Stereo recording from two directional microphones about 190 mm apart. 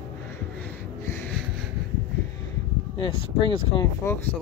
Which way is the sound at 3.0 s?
25° left (ahead or behind).